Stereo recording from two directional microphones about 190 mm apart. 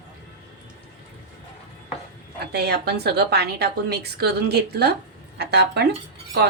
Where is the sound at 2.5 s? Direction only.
60° right (ahead or behind).